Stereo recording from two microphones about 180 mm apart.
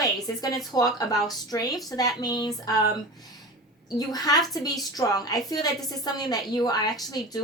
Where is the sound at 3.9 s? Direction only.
20° left (ahead or behind).